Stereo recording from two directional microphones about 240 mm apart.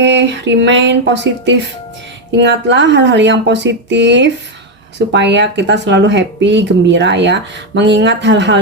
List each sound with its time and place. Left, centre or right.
0.0 s speech: right